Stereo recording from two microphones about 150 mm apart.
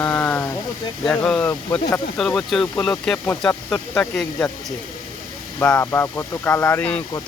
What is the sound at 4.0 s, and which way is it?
Speech, 5° left (ahead or behind).